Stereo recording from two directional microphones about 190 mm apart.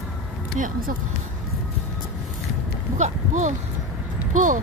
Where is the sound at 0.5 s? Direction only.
45° right (ahead or behind).